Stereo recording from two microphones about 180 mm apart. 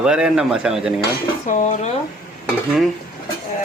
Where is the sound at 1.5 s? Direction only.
45° left (ahead or behind).